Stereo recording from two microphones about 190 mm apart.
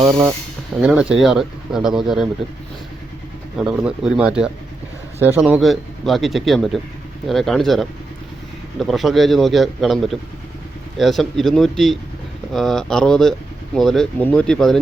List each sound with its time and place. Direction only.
0.0 s speech: 20° right (ahead or behind)
0.8 s speech: centre (ahead or behind)
3.6 s speech: centre (ahead or behind)